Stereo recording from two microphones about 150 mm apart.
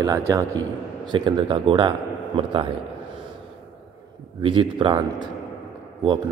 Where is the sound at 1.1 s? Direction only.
30° right (ahead or behind).